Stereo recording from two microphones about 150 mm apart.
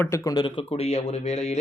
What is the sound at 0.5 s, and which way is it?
Speech, 40° left (ahead or behind).